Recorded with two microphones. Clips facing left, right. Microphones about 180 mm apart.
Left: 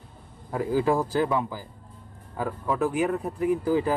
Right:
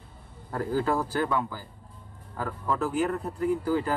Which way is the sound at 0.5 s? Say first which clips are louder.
Left 3 dB; 10° left (ahead or behind).